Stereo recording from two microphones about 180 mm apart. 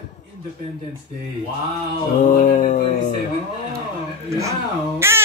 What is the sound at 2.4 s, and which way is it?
Speech, 40° left (ahead or behind).